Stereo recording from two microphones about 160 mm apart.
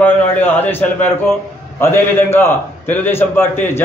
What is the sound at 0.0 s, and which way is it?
A man's voice, 10° left (ahead or behind).